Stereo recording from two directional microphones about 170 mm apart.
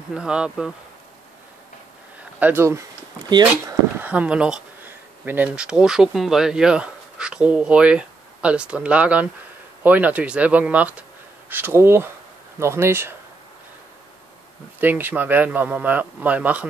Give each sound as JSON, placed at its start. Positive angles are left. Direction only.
{"t": 0.1, "sound": "speech", "side_deg": -5}
{"t": 2.4, "sound": "speech", "side_deg": -15}
{"t": 3.3, "sound": "speech", "side_deg": -25}
{"t": 4.0, "sound": "speech", "side_deg": -10}
{"t": 14.8, "sound": "speech", "side_deg": -10}